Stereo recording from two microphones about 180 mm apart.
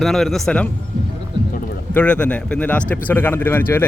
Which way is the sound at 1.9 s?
5° left (ahead or behind).